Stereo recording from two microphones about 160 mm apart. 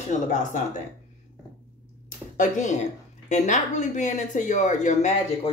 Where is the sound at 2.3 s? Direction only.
50° left (ahead or behind).